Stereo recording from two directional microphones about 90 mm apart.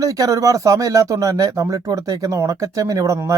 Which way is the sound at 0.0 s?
40° right (ahead or behind).